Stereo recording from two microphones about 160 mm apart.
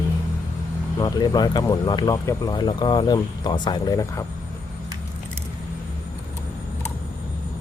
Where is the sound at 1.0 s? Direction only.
25° left (ahead or behind).